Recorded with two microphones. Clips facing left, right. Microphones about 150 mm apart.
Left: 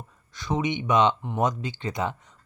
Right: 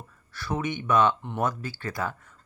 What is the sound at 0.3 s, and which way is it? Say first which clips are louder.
Speech: left 3 dB; 15° left (ahead or behind).